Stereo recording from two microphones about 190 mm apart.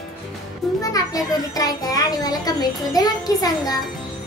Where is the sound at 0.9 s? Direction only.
20° left (ahead or behind).